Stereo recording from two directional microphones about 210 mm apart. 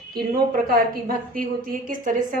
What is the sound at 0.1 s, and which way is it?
A woman's voice, 45° right (ahead or behind).